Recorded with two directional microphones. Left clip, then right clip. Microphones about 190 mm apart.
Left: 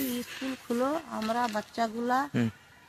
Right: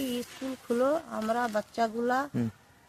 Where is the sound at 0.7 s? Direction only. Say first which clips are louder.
Right 3 dB; 30° right (ahead or behind).